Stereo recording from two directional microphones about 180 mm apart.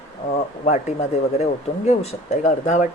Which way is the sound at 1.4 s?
35° left (ahead or behind).